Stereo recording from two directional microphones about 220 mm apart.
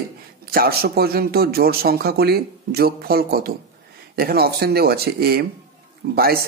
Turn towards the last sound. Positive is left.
turn(degrees=-45)  # may be behind; listen again after turning